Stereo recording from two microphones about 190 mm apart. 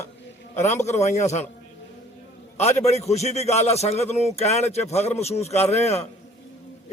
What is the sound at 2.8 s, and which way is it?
Speech, 35° left (ahead or behind).